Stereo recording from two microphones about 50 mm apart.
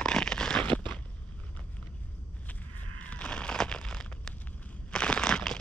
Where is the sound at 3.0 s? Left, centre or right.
Left.